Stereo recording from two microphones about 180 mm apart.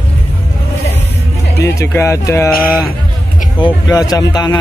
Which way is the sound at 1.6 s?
15° left (ahead or behind).